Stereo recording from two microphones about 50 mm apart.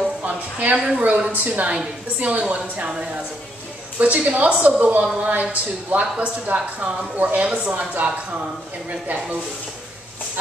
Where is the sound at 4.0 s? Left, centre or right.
Right.